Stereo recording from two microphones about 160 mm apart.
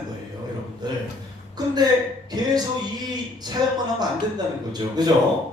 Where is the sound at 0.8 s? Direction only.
25° right (ahead or behind).